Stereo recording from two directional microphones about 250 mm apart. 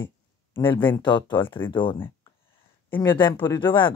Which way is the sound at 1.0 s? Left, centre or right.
Centre.